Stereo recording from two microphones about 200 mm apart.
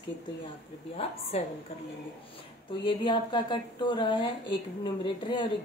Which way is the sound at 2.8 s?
20° left (ahead or behind).